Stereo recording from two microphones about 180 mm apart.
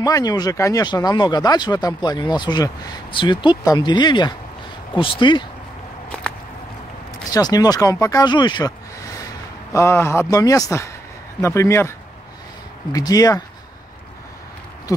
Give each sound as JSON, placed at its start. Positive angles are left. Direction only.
{"t": 0.0, "sound": "speech", "side_deg": 20}
{"t": 7.2, "sound": "speech", "side_deg": 20}
{"t": 12.9, "sound": "speech", "side_deg": 20}
{"t": 14.9, "sound": "owl", "side_deg": 20}